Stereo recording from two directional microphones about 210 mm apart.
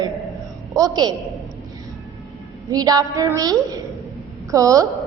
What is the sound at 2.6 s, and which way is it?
A woman's voice, 20° right (ahead or behind).